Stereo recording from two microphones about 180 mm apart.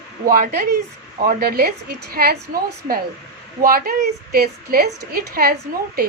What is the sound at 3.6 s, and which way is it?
Speech, 50° right (ahead or behind).